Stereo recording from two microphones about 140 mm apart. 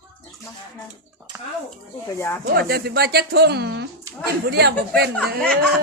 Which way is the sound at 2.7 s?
90° right.